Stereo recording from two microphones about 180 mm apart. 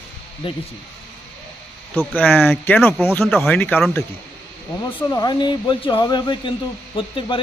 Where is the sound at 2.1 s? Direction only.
10° left (ahead or behind).